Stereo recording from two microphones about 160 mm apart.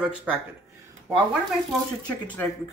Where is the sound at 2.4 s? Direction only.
10° left (ahead or behind).